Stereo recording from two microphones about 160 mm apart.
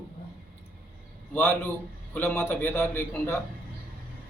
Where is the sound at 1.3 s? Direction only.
10° left (ahead or behind).